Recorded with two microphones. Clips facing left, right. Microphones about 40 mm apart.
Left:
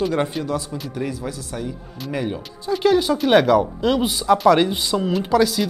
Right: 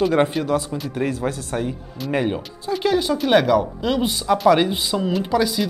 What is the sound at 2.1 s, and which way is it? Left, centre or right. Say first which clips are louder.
Speech: right 4 dB; right.